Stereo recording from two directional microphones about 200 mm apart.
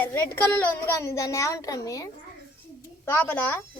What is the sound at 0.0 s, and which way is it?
A child's voice, 10° left (ahead or behind).